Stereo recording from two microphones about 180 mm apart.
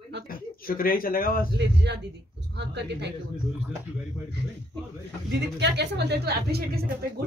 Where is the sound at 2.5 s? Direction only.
70° right (ahead or behind).